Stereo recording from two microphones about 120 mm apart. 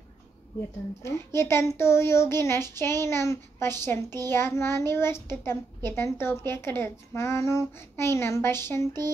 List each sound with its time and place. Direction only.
1.0 s a child's voice: 20° left (ahead or behind)